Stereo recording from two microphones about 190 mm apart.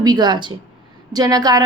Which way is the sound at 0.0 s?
20° right (ahead or behind).